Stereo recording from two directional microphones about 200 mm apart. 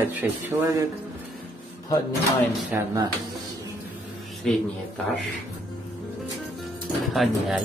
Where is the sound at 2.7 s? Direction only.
15° right (ahead or behind).